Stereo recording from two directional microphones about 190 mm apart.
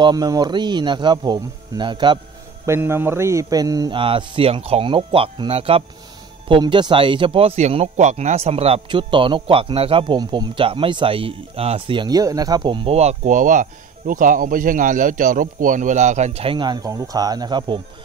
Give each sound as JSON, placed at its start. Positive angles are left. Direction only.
{"t": 0.0, "sound": "speech", "side_deg": -20}
{"t": 2.6, "sound": "speech", "side_deg": -15}